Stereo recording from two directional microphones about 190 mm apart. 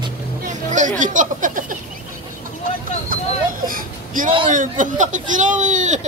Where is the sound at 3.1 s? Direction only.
45° right (ahead or behind).